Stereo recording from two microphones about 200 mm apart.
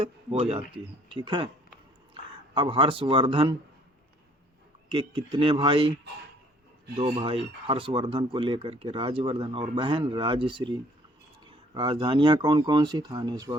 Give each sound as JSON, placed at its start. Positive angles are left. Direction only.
{"t": 0.0, "sound": "speech", "side_deg": -30}
{"t": 2.6, "sound": "speech", "side_deg": -25}
{"t": 4.9, "sound": "speech", "side_deg": -25}
{"t": 6.9, "sound": "speech", "side_deg": -25}